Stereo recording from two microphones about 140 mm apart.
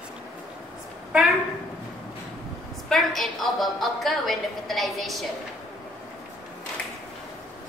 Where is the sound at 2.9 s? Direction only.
Centre (ahead or behind).